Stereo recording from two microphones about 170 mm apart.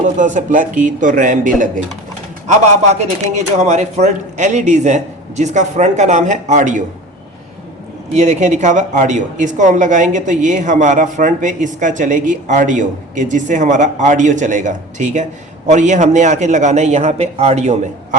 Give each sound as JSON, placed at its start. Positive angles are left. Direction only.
{"t": 0.0, "sound": "speech", "side_deg": -50}
{"t": 8.1, "sound": "speech", "side_deg": -45}